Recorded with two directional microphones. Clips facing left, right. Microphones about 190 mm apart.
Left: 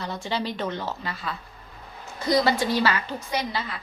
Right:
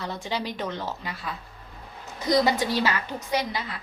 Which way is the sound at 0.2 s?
15° right (ahead or behind).